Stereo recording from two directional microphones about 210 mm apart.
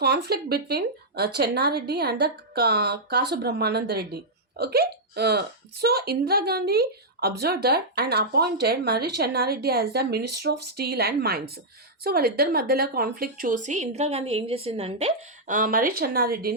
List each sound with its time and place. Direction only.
0.0 s a woman's voice: 50° right (ahead or behind)